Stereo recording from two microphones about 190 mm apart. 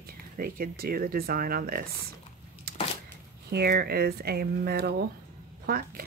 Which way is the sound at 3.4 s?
55° right (ahead or behind).